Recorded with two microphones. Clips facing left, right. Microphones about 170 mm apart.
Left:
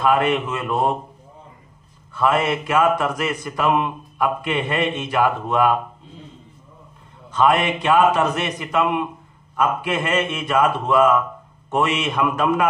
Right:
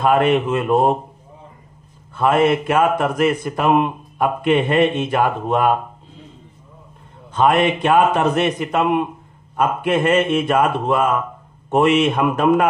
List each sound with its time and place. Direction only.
0.0 s a man's voice: 50° right (ahead or behind)
2.1 s a man's voice: 50° right (ahead or behind)
7.2 s a man's voice: 55° right (ahead or behind)